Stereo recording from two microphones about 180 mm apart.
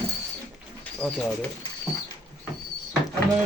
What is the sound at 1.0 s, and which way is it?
Speech, 10° left (ahead or behind).